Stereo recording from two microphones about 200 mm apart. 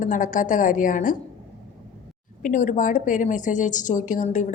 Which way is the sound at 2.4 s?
40° left (ahead or behind).